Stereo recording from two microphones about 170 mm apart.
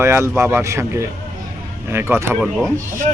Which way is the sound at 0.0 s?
15° right (ahead or behind).